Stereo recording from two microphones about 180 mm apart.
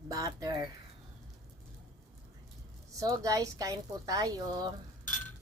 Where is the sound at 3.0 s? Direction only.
20° right (ahead or behind).